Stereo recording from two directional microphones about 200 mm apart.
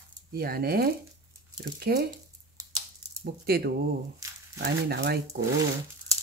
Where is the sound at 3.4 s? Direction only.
50° right (ahead or behind).